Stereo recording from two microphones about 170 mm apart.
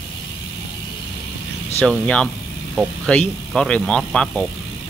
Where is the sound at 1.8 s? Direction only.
5° left (ahead or behind).